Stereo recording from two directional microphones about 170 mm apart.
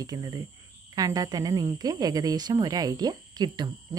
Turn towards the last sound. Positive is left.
turn(degrees=-25)  # may be behind; listen again after turning